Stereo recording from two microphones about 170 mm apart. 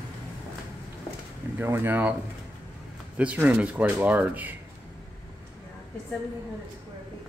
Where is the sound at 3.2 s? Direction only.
10° right (ahead or behind).